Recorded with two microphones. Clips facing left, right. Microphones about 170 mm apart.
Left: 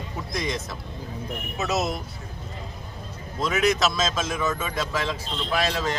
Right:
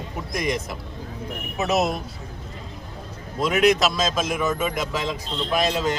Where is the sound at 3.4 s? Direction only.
15° right (ahead or behind).